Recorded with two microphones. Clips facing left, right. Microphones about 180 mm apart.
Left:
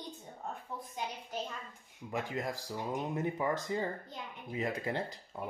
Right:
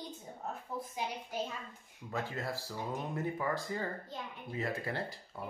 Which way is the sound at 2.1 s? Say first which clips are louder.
Left 1 dB; 15° left (ahead or behind).